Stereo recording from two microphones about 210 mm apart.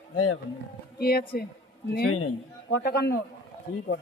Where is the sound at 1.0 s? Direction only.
45° left (ahead or behind).